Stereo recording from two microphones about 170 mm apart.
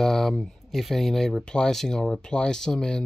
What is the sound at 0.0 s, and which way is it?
Speech, centre (ahead or behind).